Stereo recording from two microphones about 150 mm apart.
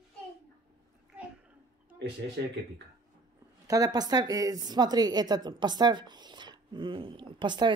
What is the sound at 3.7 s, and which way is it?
A woman's voice, 25° right (ahead or behind).